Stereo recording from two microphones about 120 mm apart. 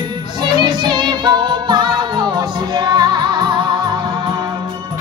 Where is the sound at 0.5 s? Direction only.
40° right (ahead or behind).